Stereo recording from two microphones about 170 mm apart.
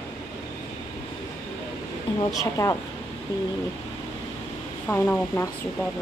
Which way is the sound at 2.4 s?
20° left (ahead or behind).